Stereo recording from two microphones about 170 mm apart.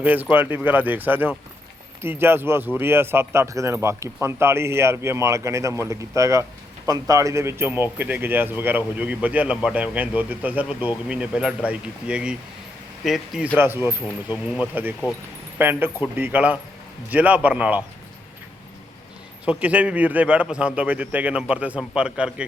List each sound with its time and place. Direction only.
0.0 s speech: 10° right (ahead or behind)
13.6 s speech: 10° right (ahead or behind)
19.5 s speech: 10° right (ahead or behind)